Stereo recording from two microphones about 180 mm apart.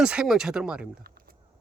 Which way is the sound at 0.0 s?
5° right (ahead or behind).